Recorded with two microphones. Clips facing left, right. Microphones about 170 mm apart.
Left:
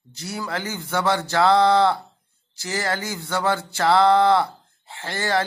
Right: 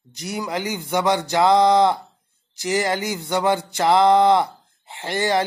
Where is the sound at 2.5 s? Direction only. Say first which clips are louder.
Right 5 dB; 20° right (ahead or behind).